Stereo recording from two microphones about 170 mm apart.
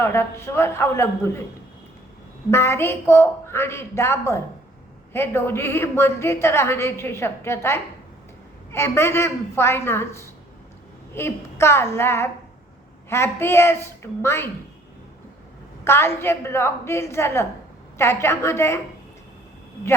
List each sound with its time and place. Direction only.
0.0 s a woman's voice: 15° left (ahead or behind)
2.5 s a woman's voice: 15° left (ahead or behind)
15.8 s a woman's voice: 15° left (ahead or behind)